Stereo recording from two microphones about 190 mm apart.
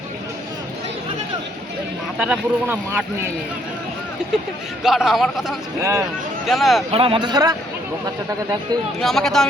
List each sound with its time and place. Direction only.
2.1 s speech: 5° right (ahead or behind)
4.8 s a man's voice: centre (ahead or behind)
5.8 s speech: 15° right (ahead or behind)
6.5 s a man's voice: centre (ahead or behind)
6.9 s speech: 30° right (ahead or behind)
9.0 s a man's voice: centre (ahead or behind)